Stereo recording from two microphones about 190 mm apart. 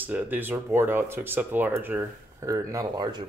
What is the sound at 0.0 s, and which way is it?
Speech, 10° right (ahead or behind).